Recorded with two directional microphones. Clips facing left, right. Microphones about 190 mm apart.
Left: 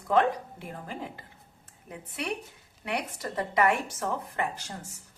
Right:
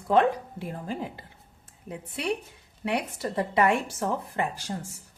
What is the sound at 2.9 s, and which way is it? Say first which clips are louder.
A woman's voice: right 4 dB; 30° right (ahead or behind).